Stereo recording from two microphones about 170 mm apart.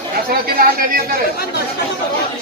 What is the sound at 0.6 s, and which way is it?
Speech, 55° right (ahead or behind).